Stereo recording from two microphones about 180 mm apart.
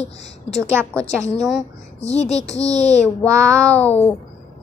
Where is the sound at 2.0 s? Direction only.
35° left (ahead or behind).